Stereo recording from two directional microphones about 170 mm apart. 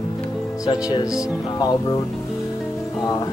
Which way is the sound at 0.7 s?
20° left (ahead or behind).